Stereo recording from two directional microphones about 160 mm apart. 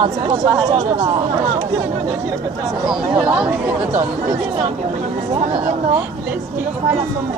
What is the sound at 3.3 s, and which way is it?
Speech, 5° right (ahead or behind).